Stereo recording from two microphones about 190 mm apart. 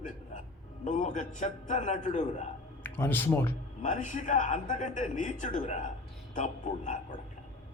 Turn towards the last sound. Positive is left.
turn(degrees=40)  # may be behind; listen again after turning